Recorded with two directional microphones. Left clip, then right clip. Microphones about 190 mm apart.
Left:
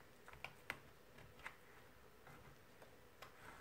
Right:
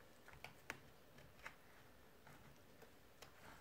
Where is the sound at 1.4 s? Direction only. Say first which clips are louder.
Left 2 dB; 10° right (ahead or behind).